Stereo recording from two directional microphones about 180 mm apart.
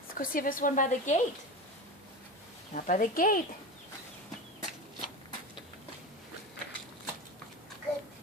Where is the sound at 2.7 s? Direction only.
45° left (ahead or behind).